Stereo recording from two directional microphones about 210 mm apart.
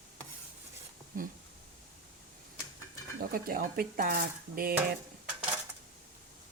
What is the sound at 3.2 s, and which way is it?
Speech, 45° right (ahead or behind).